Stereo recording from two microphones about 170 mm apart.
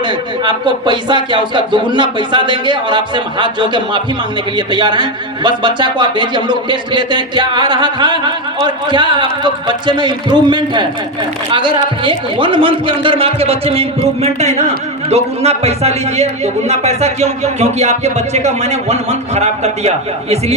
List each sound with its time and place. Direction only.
0.0 s speech: 25° right (ahead or behind)
12.0 s speech: 30° right (ahead or behind)